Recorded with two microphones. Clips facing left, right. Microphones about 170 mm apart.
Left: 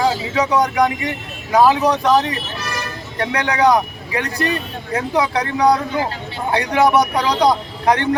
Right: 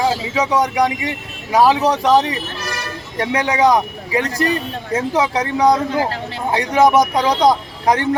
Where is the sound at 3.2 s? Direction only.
25° right (ahead or behind).